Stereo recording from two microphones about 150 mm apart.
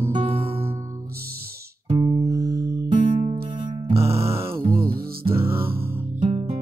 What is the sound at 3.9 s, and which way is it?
Music, 40° right (ahead or behind).